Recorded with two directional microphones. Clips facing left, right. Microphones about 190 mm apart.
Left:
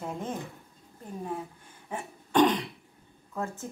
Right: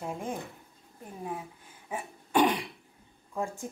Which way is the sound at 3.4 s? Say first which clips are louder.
Right 1 dB; 15° right (ahead or behind).